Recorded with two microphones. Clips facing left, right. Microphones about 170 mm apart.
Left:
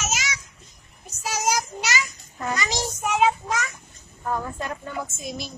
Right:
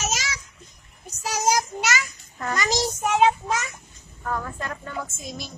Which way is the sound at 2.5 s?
45° right (ahead or behind).